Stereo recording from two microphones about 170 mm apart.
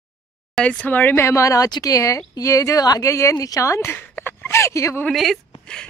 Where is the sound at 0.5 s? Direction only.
5° left (ahead or behind).